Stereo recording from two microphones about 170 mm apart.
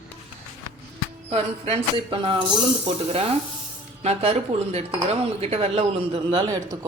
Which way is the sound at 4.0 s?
35° right (ahead or behind).